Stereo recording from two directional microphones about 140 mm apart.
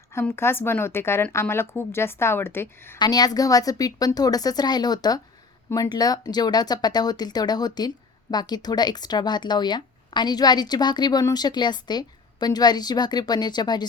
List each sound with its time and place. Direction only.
0.3 s speech: 15° left (ahead or behind)
3.0 s speech: 30° left (ahead or behind)